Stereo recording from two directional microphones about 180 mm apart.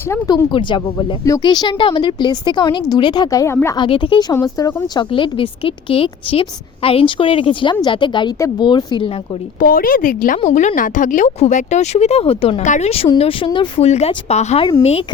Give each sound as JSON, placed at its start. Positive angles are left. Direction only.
{"t": 0.1, "sound": "speech", "side_deg": 20}
{"t": 3.8, "sound": "speech", "side_deg": 30}
{"t": 9.6, "sound": "speech", "side_deg": 55}